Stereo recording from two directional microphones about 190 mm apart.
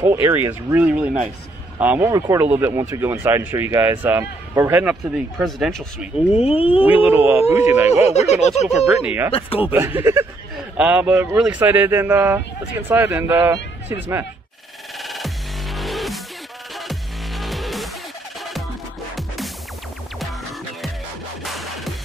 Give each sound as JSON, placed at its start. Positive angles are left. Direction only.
{"t": 0.0, "sound": "speech", "side_deg": -15}
{"t": 6.3, "sound": "a sound", "side_deg": 30}
{"t": 6.8, "sound": "speech", "side_deg": -10}
{"t": 7.9, "sound": "speech", "side_deg": 35}
{"t": 8.8, "sound": "speech", "side_deg": -10}
{"t": 15.0, "sound": "music", "side_deg": 0}
{"t": 19.1, "sound": "music", "side_deg": 0}
{"t": 21.4, "sound": "music", "side_deg": 0}